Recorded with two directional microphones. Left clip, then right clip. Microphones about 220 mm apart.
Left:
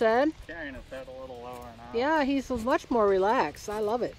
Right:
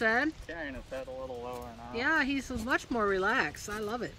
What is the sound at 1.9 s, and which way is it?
Speech, 10° left (ahead or behind).